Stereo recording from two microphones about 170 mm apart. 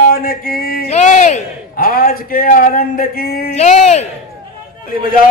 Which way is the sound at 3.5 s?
40° left (ahead or behind).